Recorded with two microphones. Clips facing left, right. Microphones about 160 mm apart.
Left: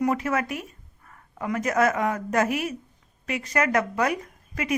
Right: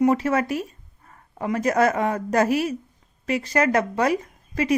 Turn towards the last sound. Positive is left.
turn(degrees=-30)  # may be behind; listen again after turning